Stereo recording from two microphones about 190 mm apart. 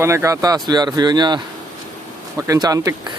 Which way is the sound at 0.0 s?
15° right (ahead or behind).